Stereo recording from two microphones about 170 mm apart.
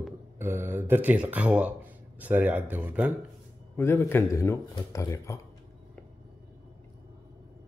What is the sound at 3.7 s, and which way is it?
Speech, 15° left (ahead or behind).